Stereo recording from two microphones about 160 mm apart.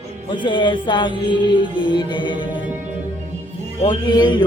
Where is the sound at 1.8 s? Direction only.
30° left (ahead or behind).